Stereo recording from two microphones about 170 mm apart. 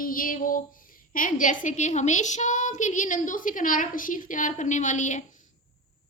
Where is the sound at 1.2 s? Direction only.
50° left (ahead or behind).